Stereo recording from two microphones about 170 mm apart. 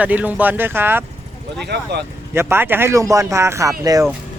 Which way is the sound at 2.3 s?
15° right (ahead or behind).